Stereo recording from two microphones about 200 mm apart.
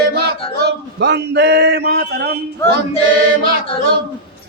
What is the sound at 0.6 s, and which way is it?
Speech, 55° right (ahead or behind).